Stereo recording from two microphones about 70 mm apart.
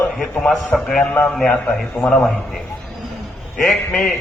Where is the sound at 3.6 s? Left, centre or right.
Centre.